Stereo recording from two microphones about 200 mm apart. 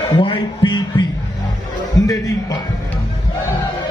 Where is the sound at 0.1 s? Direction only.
25° left (ahead or behind).